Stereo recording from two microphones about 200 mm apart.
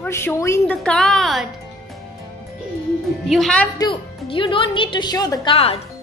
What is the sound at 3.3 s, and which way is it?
Speech, centre (ahead or behind).